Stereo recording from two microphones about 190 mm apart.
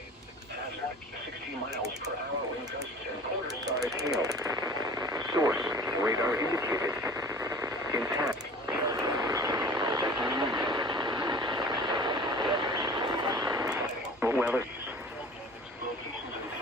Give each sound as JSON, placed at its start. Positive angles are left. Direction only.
{"t": 3.8, "sound": "a sound", "side_deg": -20}
{"t": 4.2, "sound": "radio", "side_deg": -20}
{"t": 14.2, "sound": "radio", "side_deg": -10}